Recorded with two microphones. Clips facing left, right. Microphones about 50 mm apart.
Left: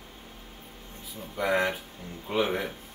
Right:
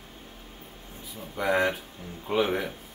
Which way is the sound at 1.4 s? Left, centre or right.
Centre.